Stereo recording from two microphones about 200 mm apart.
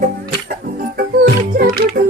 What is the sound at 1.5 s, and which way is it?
Music, 50° right (ahead or behind).